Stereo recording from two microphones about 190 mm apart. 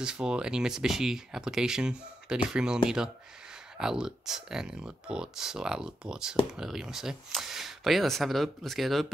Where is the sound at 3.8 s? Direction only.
5° right (ahead or behind).